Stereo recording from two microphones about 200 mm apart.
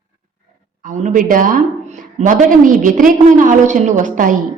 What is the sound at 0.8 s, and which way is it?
A woman's voice, 40° right (ahead or behind).